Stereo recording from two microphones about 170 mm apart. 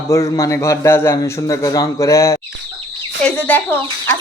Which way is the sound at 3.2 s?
5° left (ahead or behind).